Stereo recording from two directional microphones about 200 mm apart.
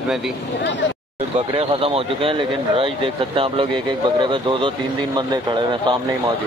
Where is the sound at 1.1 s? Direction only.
30° right (ahead or behind).